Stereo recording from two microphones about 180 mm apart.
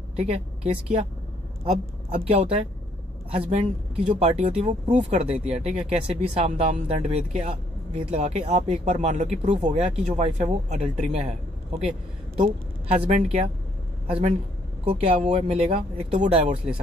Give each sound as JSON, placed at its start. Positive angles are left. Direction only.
{"t": 0.1, "sound": "speech", "side_deg": -35}
{"t": 1.6, "sound": "a woman's voice", "side_deg": -35}
{"t": 12.4, "sound": "a man's voice", "side_deg": -35}